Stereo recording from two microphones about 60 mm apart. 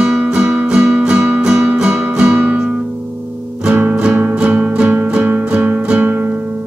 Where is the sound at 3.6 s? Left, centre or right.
Right.